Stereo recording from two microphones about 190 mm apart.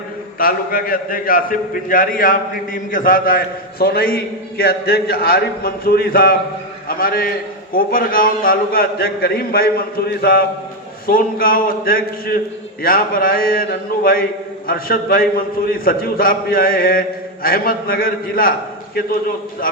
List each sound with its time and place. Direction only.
0.3 s a man's voice: 50° left (ahead or behind)